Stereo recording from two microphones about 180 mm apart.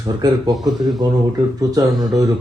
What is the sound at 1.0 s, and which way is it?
Speech, 20° right (ahead or behind).